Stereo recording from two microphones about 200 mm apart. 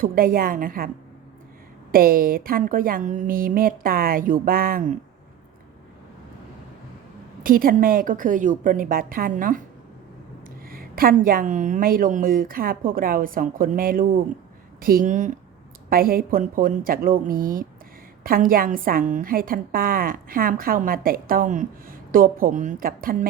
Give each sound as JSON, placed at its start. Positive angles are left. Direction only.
{"t": 0.0, "sound": "a woman's voice", "side_deg": -45}
{"t": 1.9, "sound": "a woman's voice", "side_deg": -45}
{"t": 7.4, "sound": "a woman's voice", "side_deg": -45}
{"t": 10.7, "sound": "a woman's voice", "side_deg": -45}